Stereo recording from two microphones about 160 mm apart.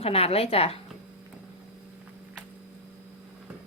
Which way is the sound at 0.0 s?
40° left (ahead or behind).